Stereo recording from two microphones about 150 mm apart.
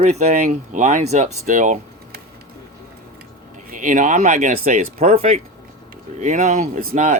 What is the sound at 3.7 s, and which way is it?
Speech, 60° right (ahead or behind).